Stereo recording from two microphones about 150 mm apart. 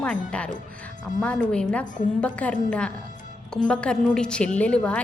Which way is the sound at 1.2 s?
5° left (ahead or behind).